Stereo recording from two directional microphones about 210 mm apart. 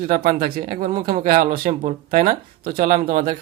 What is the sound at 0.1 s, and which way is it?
Speech, 45° right (ahead or behind).